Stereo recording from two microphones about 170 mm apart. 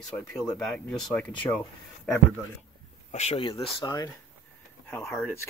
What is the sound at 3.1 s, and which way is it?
Speech, 40° left (ahead or behind).